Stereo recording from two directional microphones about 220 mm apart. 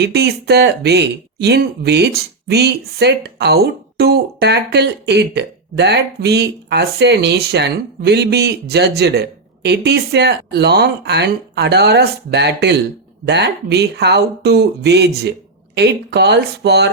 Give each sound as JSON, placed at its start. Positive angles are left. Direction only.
{"t": 0.0, "sound": "speech", "side_deg": -50}